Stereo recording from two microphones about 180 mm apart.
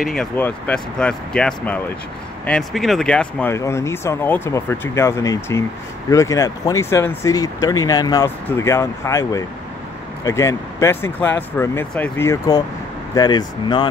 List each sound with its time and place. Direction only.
0.0 s speech: centre (ahead or behind); by 13.8 s 25° left (ahead or behind)